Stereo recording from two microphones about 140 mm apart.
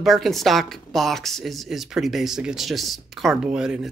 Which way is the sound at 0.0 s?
Centre (ahead or behind).